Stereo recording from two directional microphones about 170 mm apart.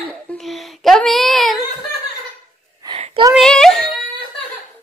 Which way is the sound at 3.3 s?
5° left (ahead or behind).